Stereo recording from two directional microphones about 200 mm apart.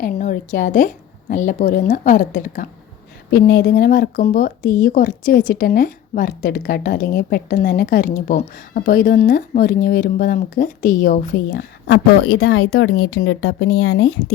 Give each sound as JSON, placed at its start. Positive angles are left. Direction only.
{"t": 0.0, "sound": "a woman's voice", "side_deg": 40}
{"t": 12.4, "sound": "speech", "side_deg": 80}